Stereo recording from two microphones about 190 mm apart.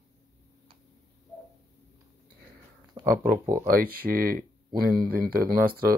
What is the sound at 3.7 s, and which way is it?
Speech, 50° right (ahead or behind).